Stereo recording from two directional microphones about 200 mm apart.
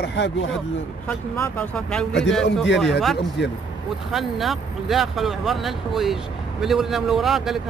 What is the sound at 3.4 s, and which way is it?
Speech, 60° left (ahead or behind).